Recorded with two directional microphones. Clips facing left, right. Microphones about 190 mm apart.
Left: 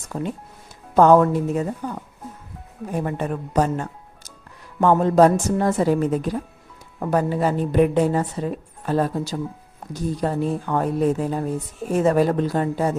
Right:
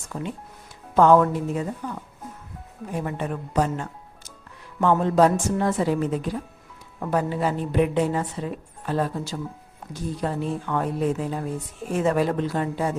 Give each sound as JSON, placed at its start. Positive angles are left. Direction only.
{"t": 0.1, "sound": "a woman's voice", "side_deg": 40}